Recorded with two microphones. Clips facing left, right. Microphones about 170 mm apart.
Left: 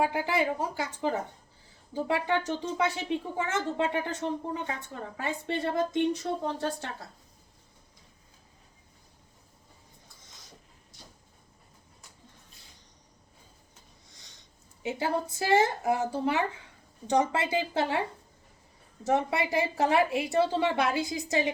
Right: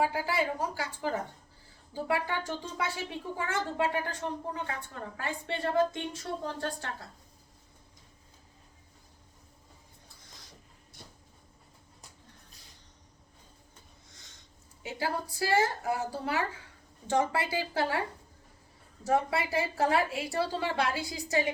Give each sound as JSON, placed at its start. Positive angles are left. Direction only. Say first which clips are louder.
{"t": 0.0, "sound": "a woman's voice", "louder": "left 2 dB", "side_deg": 20}
{"t": 14.1, "sound": "a sound", "louder": "even", "side_deg": 20}
{"t": 14.8, "sound": "a woman's voice", "louder": "left 4 dB", "side_deg": 20}
{"t": 19.0, "sound": "a woman's voice", "louder": "left 1 dB", "side_deg": 20}